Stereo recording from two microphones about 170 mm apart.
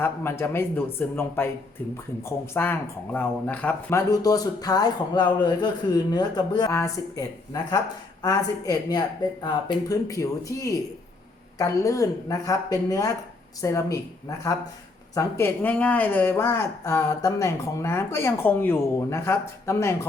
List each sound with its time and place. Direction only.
0.0 s speech: 15° left (ahead or behind)
4.1 s speech: 20° left (ahead or behind)